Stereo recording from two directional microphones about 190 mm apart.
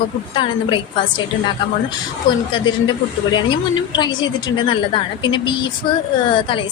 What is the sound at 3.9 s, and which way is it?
Speech, 25° left (ahead or behind).